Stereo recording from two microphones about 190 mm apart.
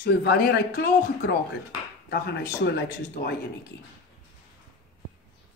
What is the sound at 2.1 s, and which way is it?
Speech, 60° left (ahead or behind).